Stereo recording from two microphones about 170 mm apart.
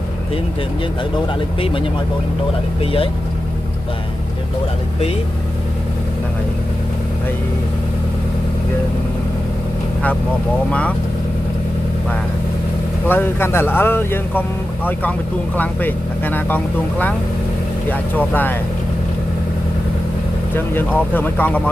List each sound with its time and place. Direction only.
2.8 s speech: 35° left (ahead or behind)
10.7 s speech: 5° left (ahead or behind)
13.1 s speech: 15° left (ahead or behind)
18.1 s speech: 10° left (ahead or behind)
20.5 s speech: 10° left (ahead or behind)